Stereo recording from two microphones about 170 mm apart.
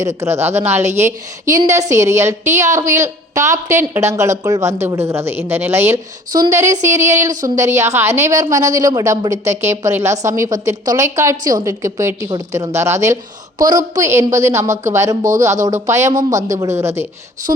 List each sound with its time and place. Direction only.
0.0 s a woman's voice: 15° right (ahead or behind)